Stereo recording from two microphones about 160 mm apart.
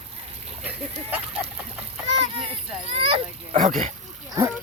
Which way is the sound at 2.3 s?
35° right (ahead or behind).